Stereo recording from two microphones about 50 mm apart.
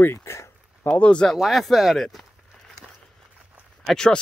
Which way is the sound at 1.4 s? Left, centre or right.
Centre.